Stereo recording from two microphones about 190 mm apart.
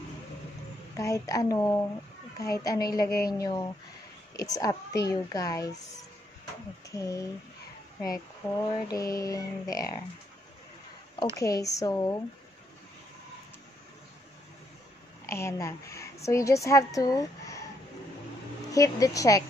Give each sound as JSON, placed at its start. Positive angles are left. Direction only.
{"t": 0.9, "sound": "a child's voice", "side_deg": 15}
{"t": 6.9, "sound": "a child's voice", "side_deg": 15}
{"t": 8.4, "sound": "a child's voice", "side_deg": 15}
{"t": 11.3, "sound": "a child's voice", "side_deg": 15}
{"t": 15.3, "sound": "a woman's voice", "side_deg": 15}
{"t": 18.7, "sound": "a child's voice", "side_deg": 15}